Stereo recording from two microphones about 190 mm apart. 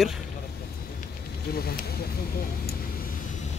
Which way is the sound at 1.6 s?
55° left (ahead or behind).